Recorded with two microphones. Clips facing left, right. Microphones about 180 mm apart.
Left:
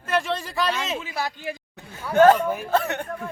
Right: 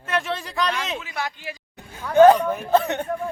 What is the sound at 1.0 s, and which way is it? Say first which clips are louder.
Speech: left 1 dB; 30° left (ahead or behind).